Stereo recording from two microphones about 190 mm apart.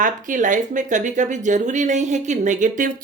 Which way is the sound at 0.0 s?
40° right (ahead or behind).